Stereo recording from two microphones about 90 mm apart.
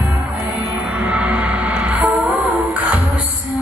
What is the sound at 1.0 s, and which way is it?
Music, 15° right (ahead or behind).